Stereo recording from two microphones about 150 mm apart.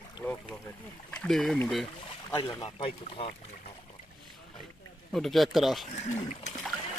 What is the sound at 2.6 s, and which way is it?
Speech, 35° left (ahead or behind).